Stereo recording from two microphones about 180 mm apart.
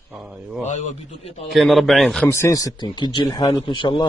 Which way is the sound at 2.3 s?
15° left (ahead or behind).